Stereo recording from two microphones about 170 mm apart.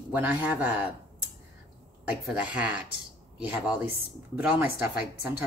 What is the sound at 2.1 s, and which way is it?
Speech, 5° right (ahead or behind).